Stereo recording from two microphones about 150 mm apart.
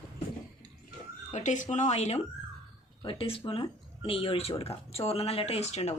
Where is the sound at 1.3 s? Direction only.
55° left (ahead or behind).